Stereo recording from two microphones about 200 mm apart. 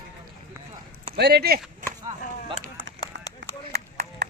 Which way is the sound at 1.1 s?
55° right (ahead or behind).